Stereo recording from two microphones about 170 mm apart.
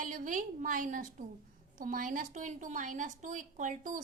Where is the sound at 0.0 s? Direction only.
50° right (ahead or behind).